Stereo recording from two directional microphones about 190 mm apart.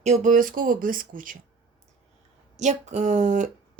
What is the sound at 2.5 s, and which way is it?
Speech, 40° right (ahead or behind).